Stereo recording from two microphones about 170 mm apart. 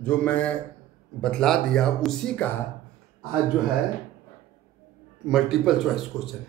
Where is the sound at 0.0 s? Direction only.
5° left (ahead or behind).